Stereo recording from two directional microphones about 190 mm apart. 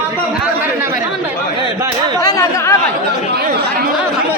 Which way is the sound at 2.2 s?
15° left (ahead or behind).